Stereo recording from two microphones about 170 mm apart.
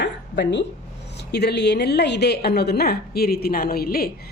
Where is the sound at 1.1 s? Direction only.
75° left (ahead or behind).